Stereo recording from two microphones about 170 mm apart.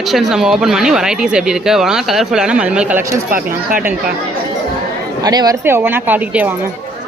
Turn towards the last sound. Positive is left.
turn(degrees=-10)  # may be behind; listen again after turning